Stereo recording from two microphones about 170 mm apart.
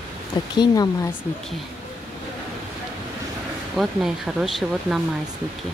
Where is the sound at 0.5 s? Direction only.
25° left (ahead or behind).